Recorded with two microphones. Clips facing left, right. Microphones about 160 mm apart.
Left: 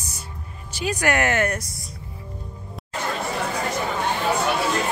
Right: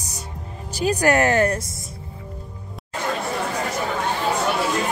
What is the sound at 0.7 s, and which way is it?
Speech, 35° right (ahead or behind).